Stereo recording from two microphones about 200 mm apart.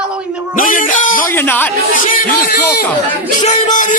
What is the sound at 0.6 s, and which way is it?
Music, 40° left (ahead or behind).